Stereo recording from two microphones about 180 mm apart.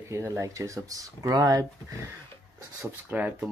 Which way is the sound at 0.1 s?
15° right (ahead or behind).